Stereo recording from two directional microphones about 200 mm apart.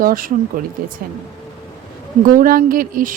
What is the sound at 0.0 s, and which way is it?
Speech, 45° right (ahead or behind).